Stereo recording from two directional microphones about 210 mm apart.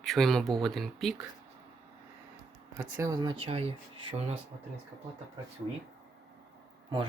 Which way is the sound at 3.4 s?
30° right (ahead or behind).